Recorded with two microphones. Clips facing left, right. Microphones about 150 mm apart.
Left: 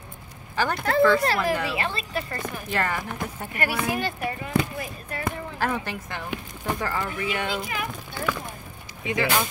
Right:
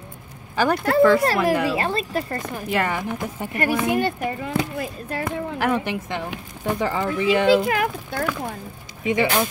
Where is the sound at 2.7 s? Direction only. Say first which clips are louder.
Right 4 dB; 15° right (ahead or behind).